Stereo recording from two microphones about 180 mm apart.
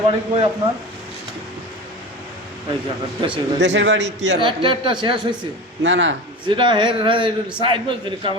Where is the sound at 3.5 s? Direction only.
80° right.